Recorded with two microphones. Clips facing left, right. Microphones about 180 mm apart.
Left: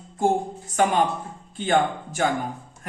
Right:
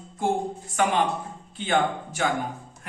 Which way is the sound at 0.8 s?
40° left (ahead or behind).